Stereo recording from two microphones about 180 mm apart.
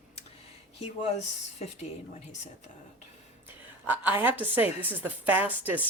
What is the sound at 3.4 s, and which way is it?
A woman's voice, 10° right (ahead or behind).